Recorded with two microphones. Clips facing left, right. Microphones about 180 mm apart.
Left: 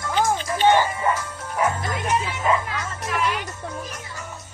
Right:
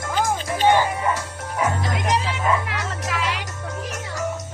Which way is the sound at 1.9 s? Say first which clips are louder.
Right 1 dB; 75° right (ahead or behind).